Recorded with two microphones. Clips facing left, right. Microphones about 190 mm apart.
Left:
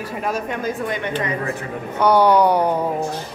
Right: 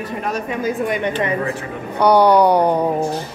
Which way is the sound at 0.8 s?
20° right (ahead or behind).